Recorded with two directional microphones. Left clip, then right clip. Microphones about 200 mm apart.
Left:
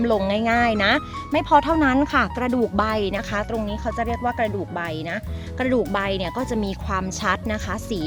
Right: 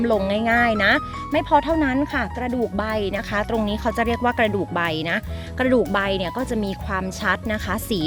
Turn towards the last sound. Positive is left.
turn(degrees=-5)  # may be behind; listen again after turning